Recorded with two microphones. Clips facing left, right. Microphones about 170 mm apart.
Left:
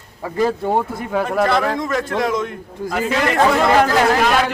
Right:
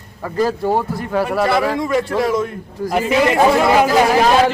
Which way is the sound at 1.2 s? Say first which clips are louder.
Right 1 dB; 5° right (ahead or behind).